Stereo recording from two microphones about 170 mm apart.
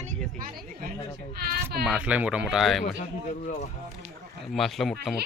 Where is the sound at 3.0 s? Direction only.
45° left (ahead or behind).